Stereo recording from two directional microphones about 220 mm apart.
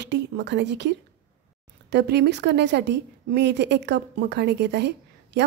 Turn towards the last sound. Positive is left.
turn(degrees=-50)  # may be behind; listen again after turning